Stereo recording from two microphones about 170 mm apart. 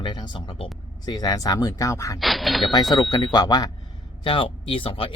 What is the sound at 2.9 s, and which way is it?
Speech, 25° left (ahead or behind).